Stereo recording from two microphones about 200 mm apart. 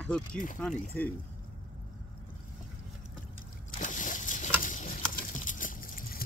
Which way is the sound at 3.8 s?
40° left (ahead or behind).